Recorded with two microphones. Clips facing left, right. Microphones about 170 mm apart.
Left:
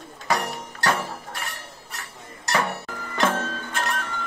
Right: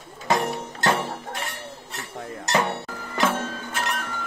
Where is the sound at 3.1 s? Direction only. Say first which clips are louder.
Even; 5° right (ahead or behind).